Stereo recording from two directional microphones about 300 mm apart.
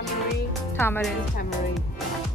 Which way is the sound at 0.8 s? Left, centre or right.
Centre.